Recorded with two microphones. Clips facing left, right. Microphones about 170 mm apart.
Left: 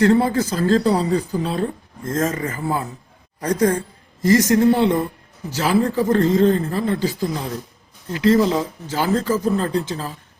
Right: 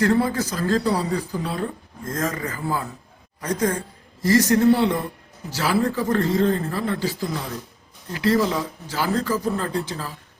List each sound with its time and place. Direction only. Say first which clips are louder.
0.0 s speech: left 4 dB; 25° left (ahead or behind)
3.4 s a woman's voice: left 5 dB; 35° left (ahead or behind)
4.2 s speech: left 2 dB; 20° left (ahead or behind)